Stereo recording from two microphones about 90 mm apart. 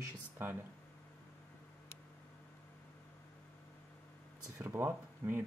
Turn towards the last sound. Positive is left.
turn(degrees=-25)  # may be behind; listen again after turning